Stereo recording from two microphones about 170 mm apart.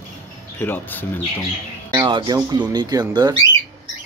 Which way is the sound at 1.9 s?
25° right (ahead or behind).